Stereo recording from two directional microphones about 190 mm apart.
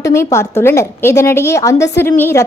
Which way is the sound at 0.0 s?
15° left (ahead or behind).